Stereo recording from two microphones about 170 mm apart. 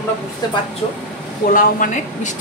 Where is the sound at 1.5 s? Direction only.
50° left (ahead or behind).